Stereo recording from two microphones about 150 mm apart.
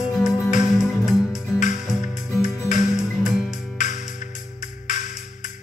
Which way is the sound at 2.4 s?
55° left (ahead or behind).